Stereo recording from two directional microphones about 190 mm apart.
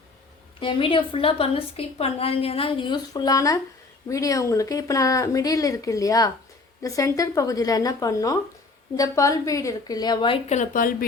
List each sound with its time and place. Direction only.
0.6 s a woman's voice: 25° left (ahead or behind); by 10.9 s 45° left (ahead or behind)